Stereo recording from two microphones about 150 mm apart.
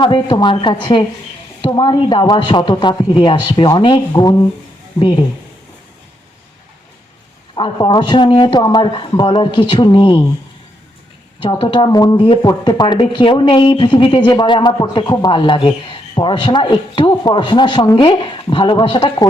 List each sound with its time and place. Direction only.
0.0 s speech: 30° left (ahead or behind)
7.5 s speech: 30° left (ahead or behind)
11.3 s speech: 30° left (ahead or behind)
12.1 s speech: 35° left (ahead or behind)